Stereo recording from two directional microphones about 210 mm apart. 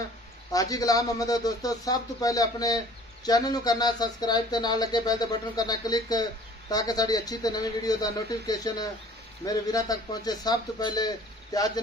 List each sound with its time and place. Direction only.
0.5 s speech: 15° left (ahead or behind)